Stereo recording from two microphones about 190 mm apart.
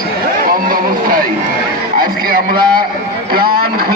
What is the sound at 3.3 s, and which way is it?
Speech, 50° right (ahead or behind).